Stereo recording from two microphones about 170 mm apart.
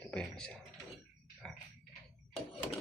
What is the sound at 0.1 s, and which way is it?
Speech, 5° left (ahead or behind).